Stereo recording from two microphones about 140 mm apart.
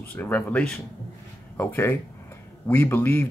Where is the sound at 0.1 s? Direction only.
10° left (ahead or behind).